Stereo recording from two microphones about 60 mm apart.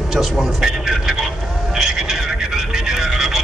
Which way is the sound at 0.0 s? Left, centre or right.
Centre.